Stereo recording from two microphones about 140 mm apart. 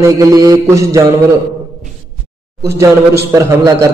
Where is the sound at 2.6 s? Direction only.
20° right (ahead or behind).